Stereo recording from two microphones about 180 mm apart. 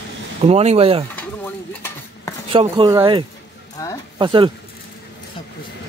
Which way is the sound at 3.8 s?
20° left (ahead or behind).